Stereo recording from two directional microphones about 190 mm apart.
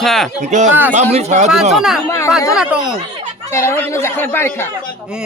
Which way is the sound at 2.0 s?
15° left (ahead or behind).